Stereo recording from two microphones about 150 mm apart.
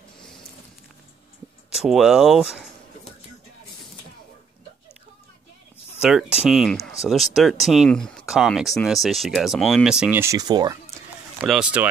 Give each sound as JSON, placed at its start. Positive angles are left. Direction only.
{"t": 1.7, "sound": "speech", "side_deg": -5}
{"t": 5.9, "sound": "a sound", "side_deg": -5}
{"t": 6.3, "sound": "speech", "side_deg": -5}
{"t": 10.2, "sound": "speech", "side_deg": -25}
{"t": 11.4, "sound": "speech", "side_deg": -5}